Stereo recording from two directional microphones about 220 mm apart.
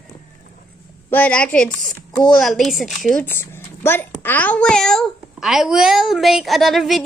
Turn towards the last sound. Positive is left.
turn(degrees=0)  # may be behind; listen again after turning